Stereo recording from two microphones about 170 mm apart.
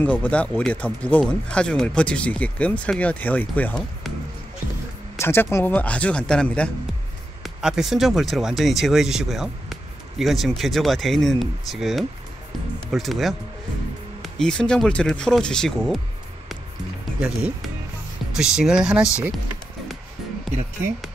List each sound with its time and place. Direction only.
0.0 s speech: 10° left (ahead or behind)
5.2 s speech: 15° left (ahead or behind)
17.2 s speech: 5° right (ahead or behind)